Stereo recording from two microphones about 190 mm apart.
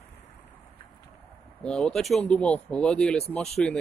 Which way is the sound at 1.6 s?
5° left (ahead or behind).